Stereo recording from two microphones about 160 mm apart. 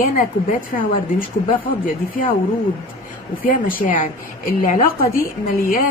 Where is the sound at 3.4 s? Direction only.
60° left (ahead or behind).